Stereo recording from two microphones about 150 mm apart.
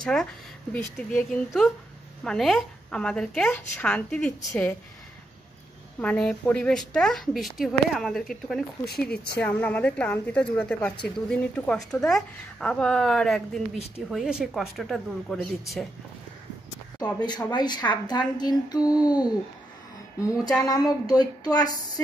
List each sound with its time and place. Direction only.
0.0 s a woman's voice: 5° left (ahead or behind)
5.9 s a woman's voice: 5° left (ahead or behind)
9.1 s speech: 90° left
9.4 s a woman's voice: 10° left (ahead or behind)
17.0 s a woman's voice: 30° left (ahead or behind)